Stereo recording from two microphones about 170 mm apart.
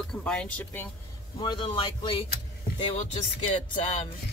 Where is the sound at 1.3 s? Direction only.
30° left (ahead or behind).